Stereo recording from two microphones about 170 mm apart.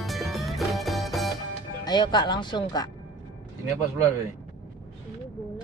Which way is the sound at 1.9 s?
25° left (ahead or behind).